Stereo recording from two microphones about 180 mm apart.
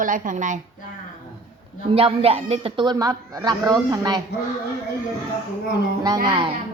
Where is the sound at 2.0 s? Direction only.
30° right (ahead or behind).